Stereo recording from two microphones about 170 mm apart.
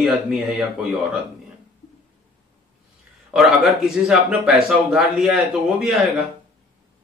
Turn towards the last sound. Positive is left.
turn(degrees=0)  # may be behind; listen again after turning